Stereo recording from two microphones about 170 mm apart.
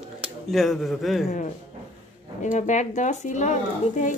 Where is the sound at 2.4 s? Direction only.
45° left (ahead or behind).